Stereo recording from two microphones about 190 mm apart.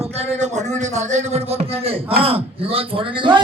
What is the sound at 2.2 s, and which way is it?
Speech, 30° right (ahead or behind).